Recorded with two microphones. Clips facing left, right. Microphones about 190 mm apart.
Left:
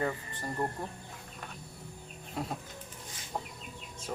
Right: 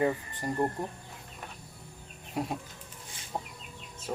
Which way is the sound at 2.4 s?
15° right (ahead or behind).